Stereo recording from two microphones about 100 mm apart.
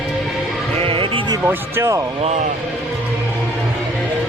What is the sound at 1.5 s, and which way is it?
Speech, 25° right (ahead or behind).